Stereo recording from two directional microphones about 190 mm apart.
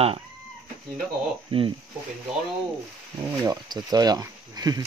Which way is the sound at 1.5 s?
30° right (ahead or behind).